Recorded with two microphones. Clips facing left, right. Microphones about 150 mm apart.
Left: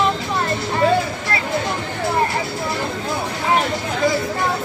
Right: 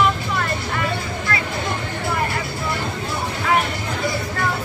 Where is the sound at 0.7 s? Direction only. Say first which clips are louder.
Left 7 dB; 30° left (ahead or behind).